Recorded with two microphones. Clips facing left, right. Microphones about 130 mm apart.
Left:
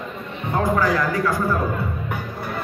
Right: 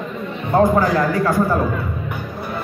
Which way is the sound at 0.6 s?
30° right (ahead or behind).